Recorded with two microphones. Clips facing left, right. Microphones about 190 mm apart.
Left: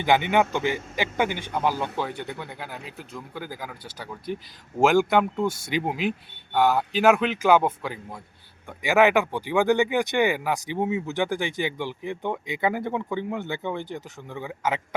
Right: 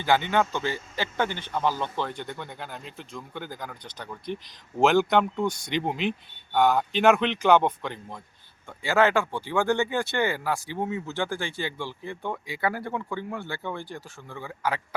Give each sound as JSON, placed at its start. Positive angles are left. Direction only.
{"t": 0.0, "sound": "speech", "side_deg": 15}
{"t": 8.8, "sound": "speech", "side_deg": 15}